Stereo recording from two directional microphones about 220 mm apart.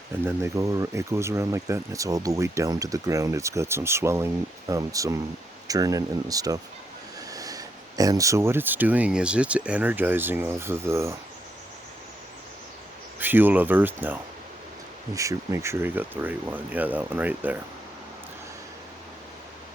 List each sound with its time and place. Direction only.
0.3 s speech: 15° right (ahead or behind)
13.1 s speech: 10° right (ahead or behind)